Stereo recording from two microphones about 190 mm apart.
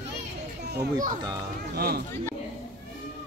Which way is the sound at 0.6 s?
60° right (ahead or behind).